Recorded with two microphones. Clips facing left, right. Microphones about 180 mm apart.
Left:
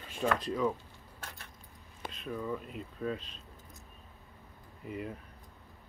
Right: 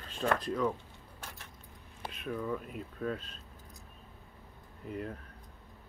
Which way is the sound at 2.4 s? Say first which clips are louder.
Even; centre (ahead or behind).